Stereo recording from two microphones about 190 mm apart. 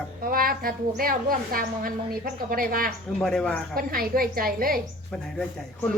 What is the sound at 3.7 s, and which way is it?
A woman's voice, 50° right (ahead or behind).